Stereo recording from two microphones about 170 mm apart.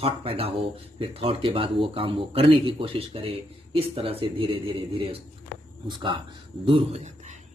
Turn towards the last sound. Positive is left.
turn(degrees=-35)  # may be behind; listen again after turning